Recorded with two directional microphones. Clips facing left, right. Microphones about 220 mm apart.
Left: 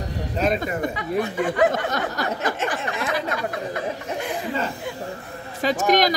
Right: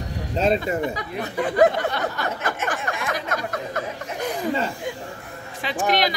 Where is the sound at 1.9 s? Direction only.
45° left (ahead or behind).